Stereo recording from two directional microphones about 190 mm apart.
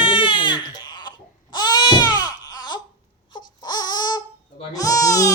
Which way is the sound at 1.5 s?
20° left (ahead or behind).